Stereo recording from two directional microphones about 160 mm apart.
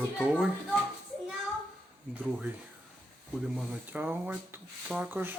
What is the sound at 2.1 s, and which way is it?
Speech, 10° right (ahead or behind).